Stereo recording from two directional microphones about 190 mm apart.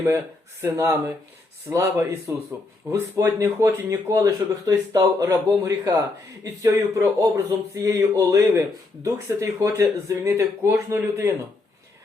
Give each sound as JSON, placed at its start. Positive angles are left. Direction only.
{"t": 0.6, "sound": "speech", "side_deg": -15}